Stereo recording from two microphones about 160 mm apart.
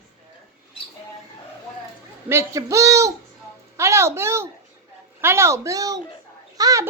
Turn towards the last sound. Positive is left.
turn(degrees=-20)  # may be behind; listen again after turning